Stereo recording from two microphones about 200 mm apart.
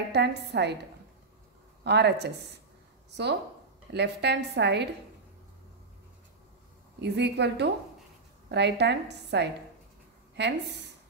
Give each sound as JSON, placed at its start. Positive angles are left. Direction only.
{"t": 0.1, "sound": "a woman's voice", "side_deg": -55}
{"t": 1.9, "sound": "a woman's voice", "side_deg": -55}
{"t": 3.9, "sound": "a woman's voice", "side_deg": -60}
{"t": 7.0, "sound": "a woman's voice", "side_deg": -60}